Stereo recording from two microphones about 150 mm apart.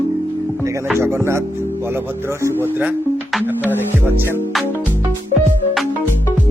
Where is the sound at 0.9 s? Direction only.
15° right (ahead or behind).